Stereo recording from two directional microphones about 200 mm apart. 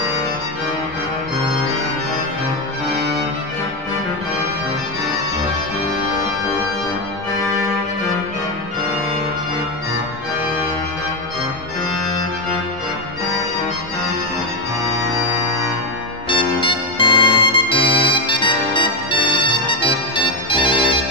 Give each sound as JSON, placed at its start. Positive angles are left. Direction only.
{"t": 16.3, "sound": "music", "side_deg": 25}